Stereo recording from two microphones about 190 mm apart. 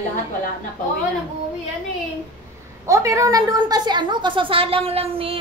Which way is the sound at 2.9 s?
15° right (ahead or behind).